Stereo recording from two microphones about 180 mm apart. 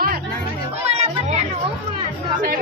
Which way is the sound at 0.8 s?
40° right (ahead or behind).